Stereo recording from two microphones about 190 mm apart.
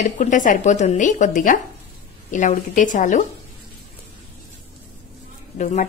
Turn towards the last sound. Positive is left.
turn(degrees=40)  # may be behind; listen again after turning